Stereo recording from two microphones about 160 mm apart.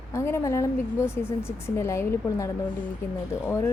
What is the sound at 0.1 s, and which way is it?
Speech, 15° left (ahead or behind).